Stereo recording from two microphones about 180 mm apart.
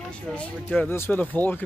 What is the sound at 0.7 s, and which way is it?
Speech, 10° left (ahead or behind).